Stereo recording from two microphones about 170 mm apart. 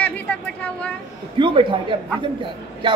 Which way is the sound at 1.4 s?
30° right (ahead or behind).